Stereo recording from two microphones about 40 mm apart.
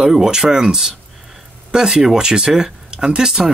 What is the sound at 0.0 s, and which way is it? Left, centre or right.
Speech, centre.